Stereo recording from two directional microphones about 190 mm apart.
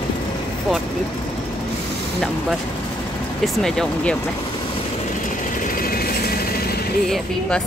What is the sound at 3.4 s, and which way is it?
Speech, centre (ahead or behind).